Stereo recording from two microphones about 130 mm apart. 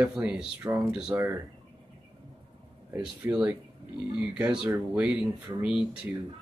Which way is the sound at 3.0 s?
10° right (ahead or behind).